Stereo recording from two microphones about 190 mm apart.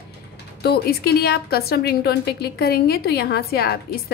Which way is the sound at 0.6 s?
55° left (ahead or behind).